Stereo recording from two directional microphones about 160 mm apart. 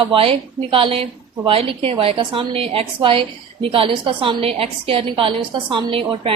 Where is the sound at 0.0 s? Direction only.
35° right (ahead or behind).